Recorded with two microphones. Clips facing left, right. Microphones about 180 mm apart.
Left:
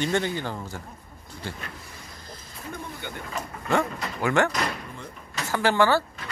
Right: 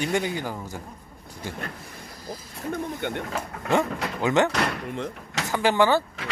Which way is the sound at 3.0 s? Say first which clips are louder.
Right 8 dB; 65° right (ahead or behind).